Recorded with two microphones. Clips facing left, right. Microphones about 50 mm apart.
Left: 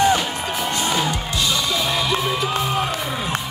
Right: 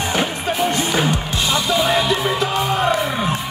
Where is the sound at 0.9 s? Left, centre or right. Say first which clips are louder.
Right 3 dB; right.